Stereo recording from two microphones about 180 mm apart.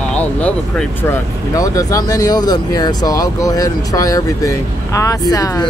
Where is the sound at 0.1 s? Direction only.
10° left (ahead or behind).